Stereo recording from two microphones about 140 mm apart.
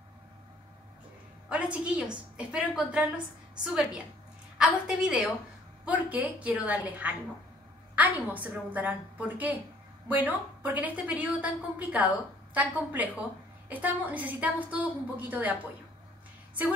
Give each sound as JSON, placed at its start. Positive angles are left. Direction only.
{"t": 1.5, "sound": "a woman's voice", "side_deg": -10}